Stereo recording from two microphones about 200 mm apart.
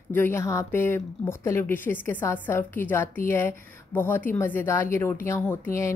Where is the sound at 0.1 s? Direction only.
10° left (ahead or behind).